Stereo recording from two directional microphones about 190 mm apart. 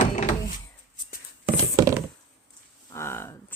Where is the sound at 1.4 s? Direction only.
20° right (ahead or behind).